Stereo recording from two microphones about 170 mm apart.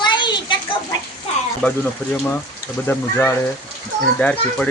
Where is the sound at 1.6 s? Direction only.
10° left (ahead or behind).